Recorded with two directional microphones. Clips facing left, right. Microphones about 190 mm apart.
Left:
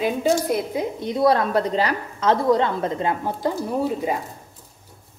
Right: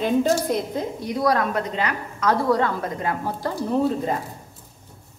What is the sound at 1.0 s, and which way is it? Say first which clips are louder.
A woman's voice: left 3 dB; 25° left (ahead or behind).